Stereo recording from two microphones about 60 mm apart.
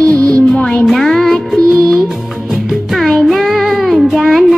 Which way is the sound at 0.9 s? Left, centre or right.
Centre.